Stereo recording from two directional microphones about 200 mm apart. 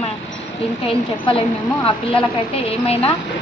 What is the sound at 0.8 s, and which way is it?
A woman's voice, 25° left (ahead or behind).